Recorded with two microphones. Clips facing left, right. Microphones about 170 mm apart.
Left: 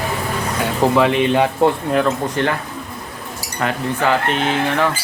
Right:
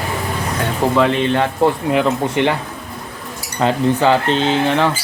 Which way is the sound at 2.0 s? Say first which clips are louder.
Right 2 dB; 15° right (ahead or behind).